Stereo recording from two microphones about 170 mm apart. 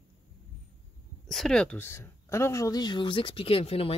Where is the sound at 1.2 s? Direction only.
Centre (ahead or behind).